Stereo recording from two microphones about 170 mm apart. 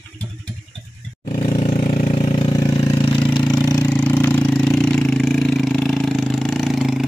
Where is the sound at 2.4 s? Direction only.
20° left (ahead or behind).